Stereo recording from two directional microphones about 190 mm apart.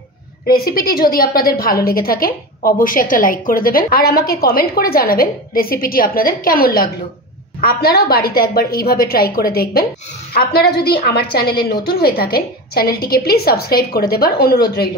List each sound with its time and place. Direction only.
0.5 s a woman's voice: 50° left (ahead or behind)